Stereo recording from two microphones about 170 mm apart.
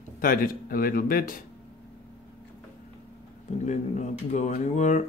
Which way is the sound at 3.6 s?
45° left (ahead or behind).